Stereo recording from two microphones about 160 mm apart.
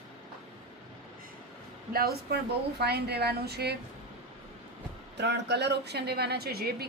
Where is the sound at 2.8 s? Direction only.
90° right.